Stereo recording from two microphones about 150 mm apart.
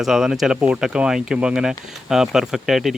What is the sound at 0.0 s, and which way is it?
Speech, centre (ahead or behind).